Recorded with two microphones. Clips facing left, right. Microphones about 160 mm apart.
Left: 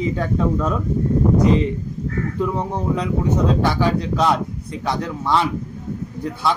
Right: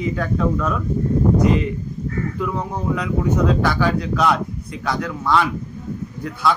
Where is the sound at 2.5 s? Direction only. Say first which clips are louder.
Left 1 dB; 25° left (ahead or behind).